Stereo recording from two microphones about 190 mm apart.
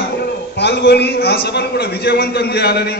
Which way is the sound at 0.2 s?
60° left (ahead or behind).